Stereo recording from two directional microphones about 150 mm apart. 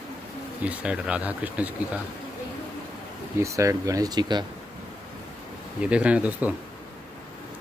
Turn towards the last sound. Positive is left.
turn(degrees=-10)  # may be behind; listen again after turning